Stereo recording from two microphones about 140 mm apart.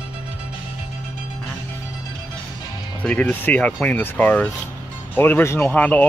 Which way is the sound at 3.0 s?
10° left (ahead or behind).